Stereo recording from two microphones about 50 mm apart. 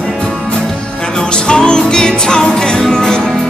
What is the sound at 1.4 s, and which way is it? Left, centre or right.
Music, centre.